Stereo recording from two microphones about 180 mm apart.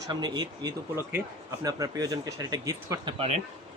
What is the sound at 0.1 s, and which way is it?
A man's voice, 25° right (ahead or behind).